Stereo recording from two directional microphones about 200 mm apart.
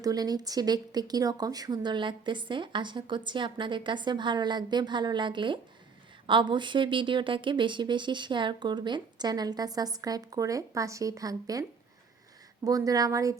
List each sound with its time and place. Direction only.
0.0 s speech: 20° right (ahead or behind)
12.6 s speech: 20° right (ahead or behind)